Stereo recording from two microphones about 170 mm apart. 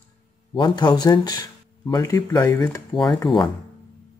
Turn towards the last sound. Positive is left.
turn(degrees=25)  # may be behind; listen again after turning